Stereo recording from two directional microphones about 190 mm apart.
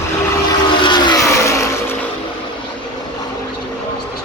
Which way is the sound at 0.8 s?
25° left (ahead or behind).